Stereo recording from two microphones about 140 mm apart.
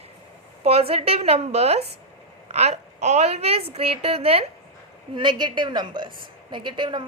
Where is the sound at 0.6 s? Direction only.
45° right (ahead or behind).